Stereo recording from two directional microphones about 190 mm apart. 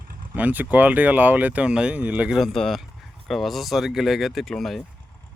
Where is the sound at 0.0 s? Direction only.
50° right (ahead or behind).